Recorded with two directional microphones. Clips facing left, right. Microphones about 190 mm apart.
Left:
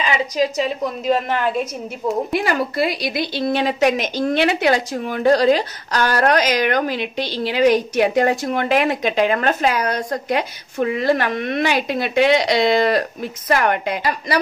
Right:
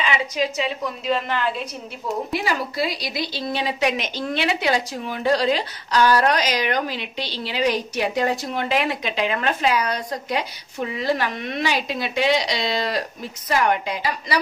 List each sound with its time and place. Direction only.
0.0 s a woman's voice: 40° left (ahead or behind)